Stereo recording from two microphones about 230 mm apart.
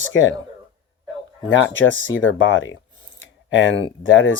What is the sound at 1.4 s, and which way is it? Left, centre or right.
Speech, left.